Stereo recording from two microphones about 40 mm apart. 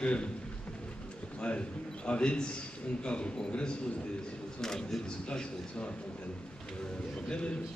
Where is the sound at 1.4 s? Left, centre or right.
Left.